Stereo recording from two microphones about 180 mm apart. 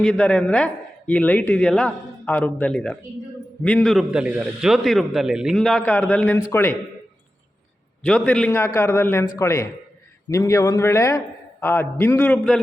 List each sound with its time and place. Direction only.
0.0 s a man's voice: 5° left (ahead or behind)
8.0 s a man's voice: 5° left (ahead or behind)